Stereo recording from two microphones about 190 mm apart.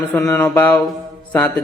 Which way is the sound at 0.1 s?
10° left (ahead or behind).